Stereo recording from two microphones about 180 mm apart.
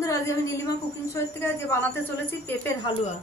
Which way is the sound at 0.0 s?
20° left (ahead or behind).